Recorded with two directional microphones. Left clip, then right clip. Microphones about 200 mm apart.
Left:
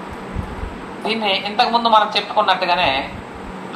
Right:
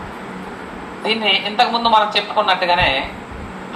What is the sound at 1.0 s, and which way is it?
A man's voice, 25° right (ahead or behind).